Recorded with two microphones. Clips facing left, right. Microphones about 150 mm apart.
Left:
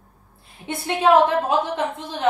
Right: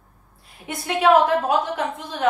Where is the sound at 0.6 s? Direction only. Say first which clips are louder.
Even; 25° left (ahead or behind).